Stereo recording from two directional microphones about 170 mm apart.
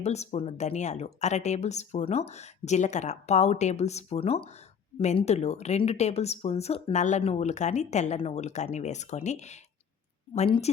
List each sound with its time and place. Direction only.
0.0 s speech: 40° left (ahead or behind)